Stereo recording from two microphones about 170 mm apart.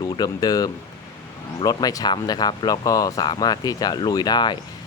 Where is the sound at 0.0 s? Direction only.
20° left (ahead or behind).